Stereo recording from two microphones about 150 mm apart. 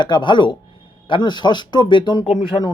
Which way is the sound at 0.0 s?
30° left (ahead or behind).